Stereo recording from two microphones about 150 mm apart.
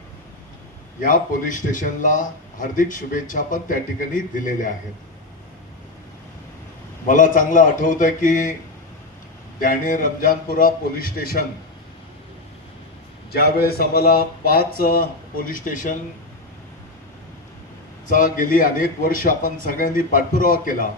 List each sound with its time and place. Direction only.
1.0 s speech: 60° left (ahead or behind)
7.1 s speech: 60° left (ahead or behind)
9.6 s a man's voice: 65° left (ahead or behind)
13.3 s speech: 90° left
15.4 s speech: 65° left (ahead or behind)
18.1 s speech: 65° left (ahead or behind)